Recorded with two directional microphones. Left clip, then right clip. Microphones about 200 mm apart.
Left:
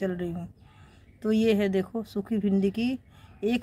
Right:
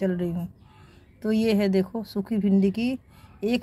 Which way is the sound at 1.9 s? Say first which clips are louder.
Right 1 dB; 20° right (ahead or behind).